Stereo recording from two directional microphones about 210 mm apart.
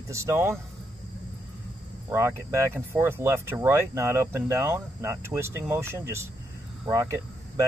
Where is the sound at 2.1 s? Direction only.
15° right (ahead or behind).